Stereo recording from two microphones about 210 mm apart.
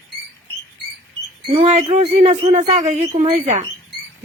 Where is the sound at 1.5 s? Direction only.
30° right (ahead or behind).